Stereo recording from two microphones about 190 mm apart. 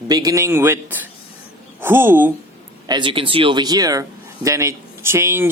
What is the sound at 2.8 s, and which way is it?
Speech, 25° right (ahead or behind).